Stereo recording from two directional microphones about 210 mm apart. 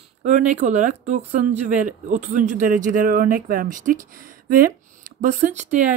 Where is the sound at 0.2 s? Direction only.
35° right (ahead or behind).